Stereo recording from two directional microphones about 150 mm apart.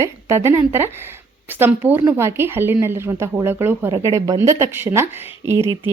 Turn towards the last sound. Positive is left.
turn(degrees=-15)  # may be behind; listen again after turning